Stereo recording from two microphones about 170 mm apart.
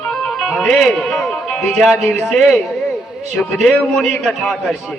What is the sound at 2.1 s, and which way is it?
Speech, centre (ahead or behind).